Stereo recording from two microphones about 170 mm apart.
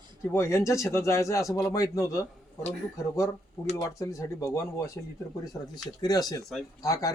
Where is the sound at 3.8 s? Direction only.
20° left (ahead or behind).